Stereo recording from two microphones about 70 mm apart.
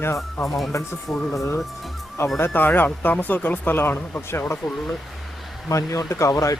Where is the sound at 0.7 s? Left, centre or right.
Left.